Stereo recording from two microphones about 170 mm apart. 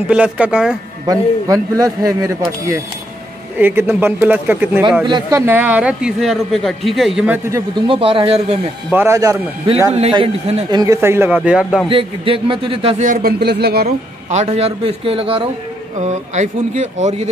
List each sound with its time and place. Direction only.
0.1 s speech: 5° right (ahead or behind)
1.0 s a man's voice: 20° right (ahead or behind)
3.5 s speech: 10° right (ahead or behind)
5.0 s a man's voice: 25° right (ahead or behind)
5.4 s speech: 10° right (ahead or behind)
7.4 s a man's voice: 25° right (ahead or behind)
8.9 s speech: 15° right (ahead or behind)
9.9 s a man's voice: 35° right (ahead or behind)
10.8 s speech: 15° right (ahead or behind)
11.9 s a man's voice: 30° right (ahead or behind)
13.0 s speech: 60° right (ahead or behind)
13.8 s a man's voice: 40° right (ahead or behind)
16.0 s speech: 45° right (ahead or behind)